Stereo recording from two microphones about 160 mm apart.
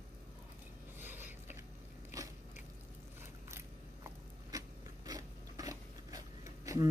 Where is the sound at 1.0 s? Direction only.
10° right (ahead or behind).